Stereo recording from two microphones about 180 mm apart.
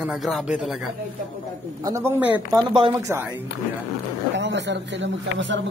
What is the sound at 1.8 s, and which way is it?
Speech, 15° right (ahead or behind).